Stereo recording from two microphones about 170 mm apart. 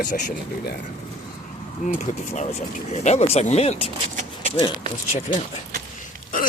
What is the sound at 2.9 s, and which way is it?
Speech, 40° left (ahead or behind).